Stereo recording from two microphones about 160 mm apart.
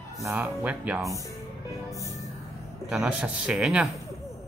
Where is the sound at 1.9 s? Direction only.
20° left (ahead or behind).